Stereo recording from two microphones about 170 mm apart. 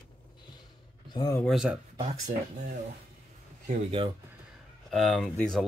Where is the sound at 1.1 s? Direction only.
25° left (ahead or behind).